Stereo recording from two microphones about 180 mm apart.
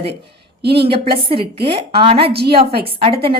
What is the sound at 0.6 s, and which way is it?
Speech, 60° right (ahead or behind).